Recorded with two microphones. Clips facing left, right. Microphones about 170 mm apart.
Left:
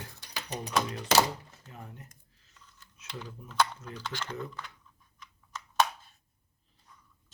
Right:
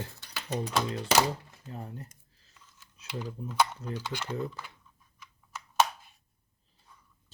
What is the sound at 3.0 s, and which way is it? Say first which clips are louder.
Mechanisms: right 6 dB; 10° right (ahead or behind).